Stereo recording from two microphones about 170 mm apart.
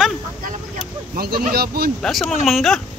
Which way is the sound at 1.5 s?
65° right (ahead or behind).